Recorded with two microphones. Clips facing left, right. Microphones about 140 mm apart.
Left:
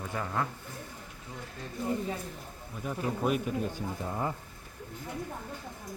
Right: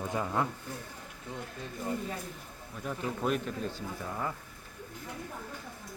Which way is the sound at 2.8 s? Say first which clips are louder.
Left 2 dB; 5° left (ahead or behind).